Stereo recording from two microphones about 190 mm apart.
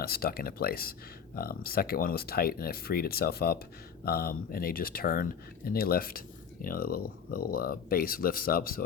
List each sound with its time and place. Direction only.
0.0 s speech: 55° left (ahead or behind)